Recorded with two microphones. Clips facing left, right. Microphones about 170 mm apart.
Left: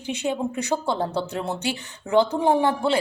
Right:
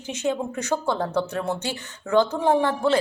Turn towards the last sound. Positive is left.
turn(degrees=15)  # may be behind; listen again after turning